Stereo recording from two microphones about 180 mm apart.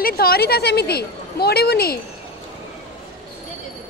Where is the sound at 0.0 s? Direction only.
55° left (ahead or behind).